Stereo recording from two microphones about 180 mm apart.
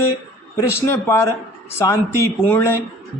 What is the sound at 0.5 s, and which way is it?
Speech, 15° left (ahead or behind).